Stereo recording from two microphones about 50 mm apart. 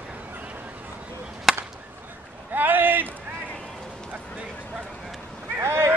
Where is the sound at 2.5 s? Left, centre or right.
Right.